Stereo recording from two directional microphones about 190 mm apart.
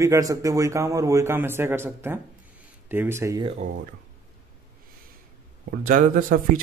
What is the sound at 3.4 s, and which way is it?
Speech, 30° right (ahead or behind).